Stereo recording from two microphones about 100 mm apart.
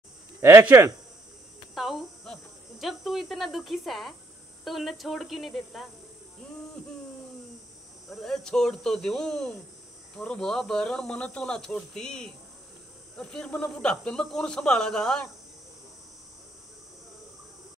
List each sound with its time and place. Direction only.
0.4 s speech: 25° right (ahead or behind)
1.8 s cricket: centre (ahead or behind)
2.8 s speech: centre (ahead or behind)
8.1 s speech: 5° left (ahead or behind)